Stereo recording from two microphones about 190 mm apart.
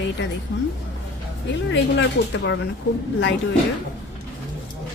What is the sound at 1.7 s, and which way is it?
Speech, 75° left (ahead or behind).